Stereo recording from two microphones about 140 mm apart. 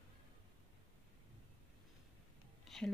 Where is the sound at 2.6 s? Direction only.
Centre (ahead or behind).